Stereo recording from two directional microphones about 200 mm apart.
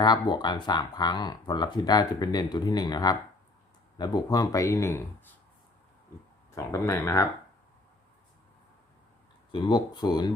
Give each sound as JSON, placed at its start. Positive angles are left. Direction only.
{"t": 0.0, "sound": "speech", "side_deg": 20}
{"t": 6.5, "sound": "speech", "side_deg": 15}
{"t": 9.5, "sound": "speech", "side_deg": 20}